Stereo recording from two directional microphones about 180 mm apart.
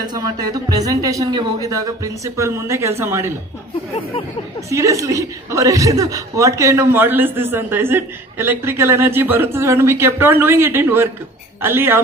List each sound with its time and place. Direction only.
0.0 s speech: 20° right (ahead or behind)
4.6 s a man's voice: 15° right (ahead or behind)